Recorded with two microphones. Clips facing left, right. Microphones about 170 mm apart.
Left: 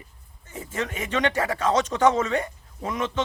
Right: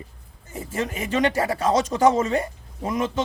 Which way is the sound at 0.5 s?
30° right (ahead or behind).